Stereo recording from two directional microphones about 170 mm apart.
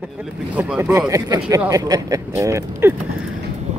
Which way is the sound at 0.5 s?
5° right (ahead or behind).